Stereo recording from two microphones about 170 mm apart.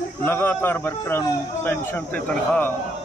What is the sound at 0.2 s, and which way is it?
A man's voice, 10° left (ahead or behind).